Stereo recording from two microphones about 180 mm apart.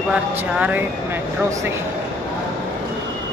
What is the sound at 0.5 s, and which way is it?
Speech, 10° right (ahead or behind).